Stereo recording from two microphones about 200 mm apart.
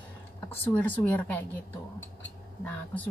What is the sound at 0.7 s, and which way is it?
Speech, 10° left (ahead or behind).